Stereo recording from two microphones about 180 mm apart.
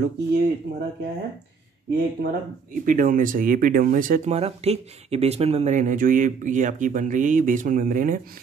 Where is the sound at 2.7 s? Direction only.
50° right (ahead or behind).